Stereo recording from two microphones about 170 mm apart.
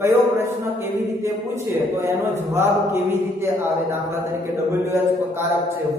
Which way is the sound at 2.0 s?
15° right (ahead or behind).